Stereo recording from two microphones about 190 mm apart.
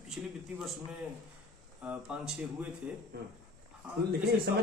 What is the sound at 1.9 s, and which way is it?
Speech, 5° right (ahead or behind).